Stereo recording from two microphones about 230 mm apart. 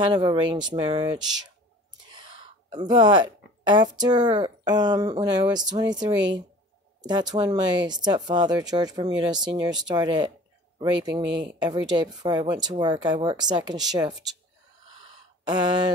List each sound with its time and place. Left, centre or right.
0.0 s speech: centre
2.0 s a sound: centre
4.0 s speech: centre
15.4 s speech: centre